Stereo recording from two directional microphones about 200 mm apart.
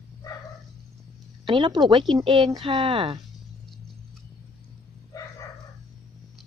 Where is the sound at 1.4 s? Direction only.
25° right (ahead or behind).